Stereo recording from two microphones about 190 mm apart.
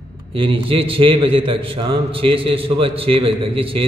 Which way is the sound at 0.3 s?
30° right (ahead or behind).